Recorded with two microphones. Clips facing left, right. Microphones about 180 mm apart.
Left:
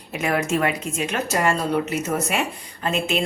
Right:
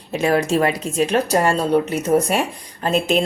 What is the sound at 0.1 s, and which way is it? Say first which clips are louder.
Speech: right 5 dB; 30° right (ahead or behind).